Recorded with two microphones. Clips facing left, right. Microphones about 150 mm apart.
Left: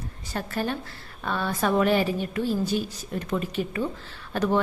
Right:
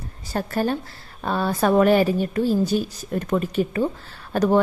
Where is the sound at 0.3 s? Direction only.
40° right (ahead or behind).